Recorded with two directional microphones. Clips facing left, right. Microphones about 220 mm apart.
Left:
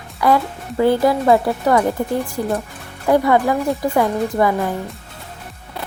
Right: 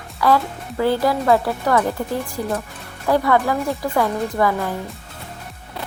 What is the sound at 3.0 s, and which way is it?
Speech, 20° left (ahead or behind).